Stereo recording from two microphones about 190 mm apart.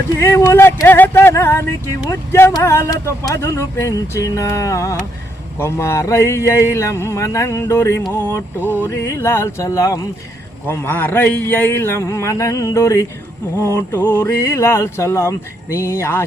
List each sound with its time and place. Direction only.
0.2 s speech: 15° left (ahead or behind)